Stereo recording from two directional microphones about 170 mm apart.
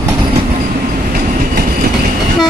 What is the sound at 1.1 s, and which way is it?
Train, 60° right (ahead or behind).